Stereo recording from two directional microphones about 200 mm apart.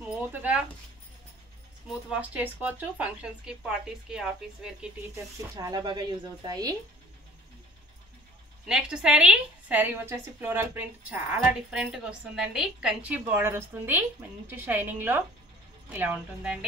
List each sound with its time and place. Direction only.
0.0 s a sound: 10° right (ahead or behind)
2.0 s speech: 5° right (ahead or behind)
5.6 s speech: 20° right (ahead or behind)
8.6 s a woman's voice: 5° right (ahead or behind)